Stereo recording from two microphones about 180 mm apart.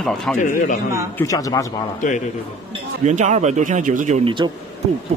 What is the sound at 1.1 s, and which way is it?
Speech, 20° left (ahead or behind).